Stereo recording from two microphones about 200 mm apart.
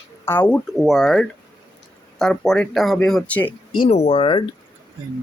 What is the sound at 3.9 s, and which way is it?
Speech, 30° left (ahead or behind).